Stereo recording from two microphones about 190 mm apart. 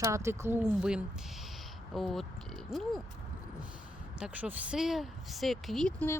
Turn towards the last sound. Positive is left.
turn(degrees=10)  # may be behind; listen again after turning